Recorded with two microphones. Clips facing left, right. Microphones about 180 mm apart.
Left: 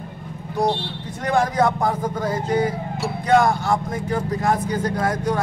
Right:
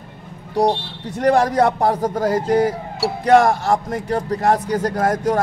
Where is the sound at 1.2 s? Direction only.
35° right (ahead or behind).